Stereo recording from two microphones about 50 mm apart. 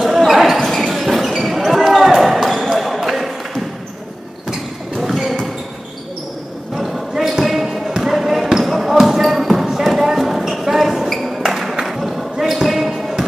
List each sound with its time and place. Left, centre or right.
0.0 s basketball bounce: centre
4.5 s a sound: centre
6.8 s basketball bounce: centre